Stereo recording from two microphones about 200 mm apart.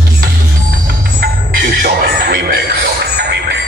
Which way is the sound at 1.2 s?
50° right (ahead or behind).